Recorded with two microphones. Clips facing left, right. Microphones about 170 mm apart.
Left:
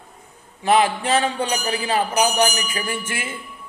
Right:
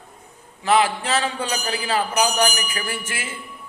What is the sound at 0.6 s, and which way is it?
A man's voice, 15° left (ahead or behind).